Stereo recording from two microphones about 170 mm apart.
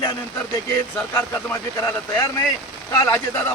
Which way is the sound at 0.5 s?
15° left (ahead or behind).